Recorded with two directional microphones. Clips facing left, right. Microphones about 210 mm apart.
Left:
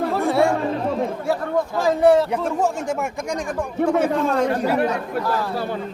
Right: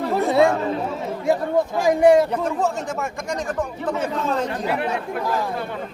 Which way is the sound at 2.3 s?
10° left (ahead or behind).